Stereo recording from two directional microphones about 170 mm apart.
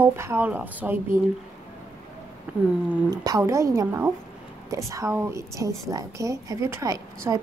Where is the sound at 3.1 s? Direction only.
20° right (ahead or behind).